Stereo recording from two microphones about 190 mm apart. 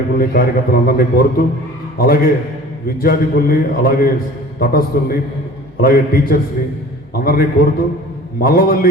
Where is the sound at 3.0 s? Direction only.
50° left (ahead or behind).